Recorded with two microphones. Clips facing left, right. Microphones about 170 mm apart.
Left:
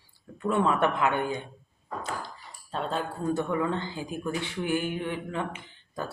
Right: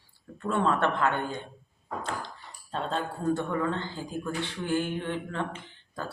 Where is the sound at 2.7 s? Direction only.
5° left (ahead or behind).